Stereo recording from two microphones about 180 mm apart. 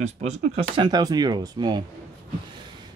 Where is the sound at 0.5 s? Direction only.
25° right (ahead or behind).